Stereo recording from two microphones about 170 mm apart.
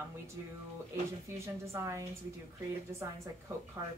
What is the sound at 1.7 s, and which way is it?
Speech, 20° right (ahead or behind).